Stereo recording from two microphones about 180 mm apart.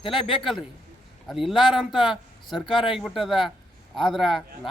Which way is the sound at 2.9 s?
Centre (ahead or behind).